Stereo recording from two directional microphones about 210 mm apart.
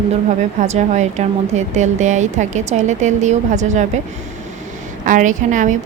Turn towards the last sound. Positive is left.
turn(degrees=-35)  # may be behind; listen again after turning